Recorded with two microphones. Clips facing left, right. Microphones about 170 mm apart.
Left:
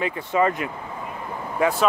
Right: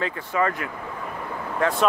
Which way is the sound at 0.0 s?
20° left (ahead or behind).